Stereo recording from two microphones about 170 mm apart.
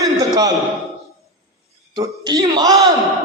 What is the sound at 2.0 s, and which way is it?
Speech, 25° right (ahead or behind).